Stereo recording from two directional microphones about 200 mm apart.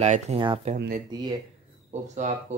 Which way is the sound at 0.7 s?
45° right (ahead or behind).